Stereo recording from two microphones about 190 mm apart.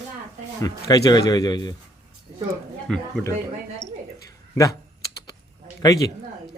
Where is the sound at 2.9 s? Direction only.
5° left (ahead or behind).